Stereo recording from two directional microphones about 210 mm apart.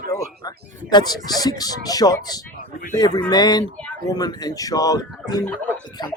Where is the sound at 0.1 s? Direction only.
20° left (ahead or behind).